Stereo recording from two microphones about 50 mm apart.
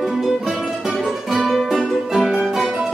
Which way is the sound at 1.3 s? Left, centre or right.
Centre.